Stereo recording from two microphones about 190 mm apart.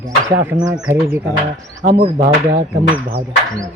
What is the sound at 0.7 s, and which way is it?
Speech, 10° right (ahead or behind).